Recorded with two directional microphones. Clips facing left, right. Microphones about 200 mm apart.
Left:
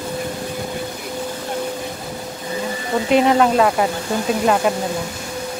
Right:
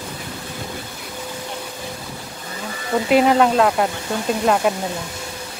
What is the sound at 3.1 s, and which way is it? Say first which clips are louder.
Speech: even; centre (ahead or behind).